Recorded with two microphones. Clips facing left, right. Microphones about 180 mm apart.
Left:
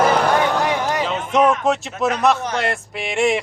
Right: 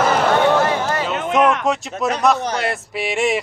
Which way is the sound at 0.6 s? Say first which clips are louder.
Right 1 dB; 15° left (ahead or behind).